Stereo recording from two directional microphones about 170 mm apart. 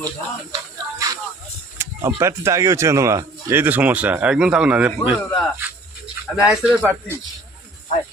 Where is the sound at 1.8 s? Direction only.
15° right (ahead or behind).